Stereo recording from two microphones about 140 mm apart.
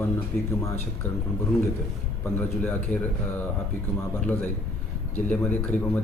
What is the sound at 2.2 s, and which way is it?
Speech, 10° left (ahead or behind).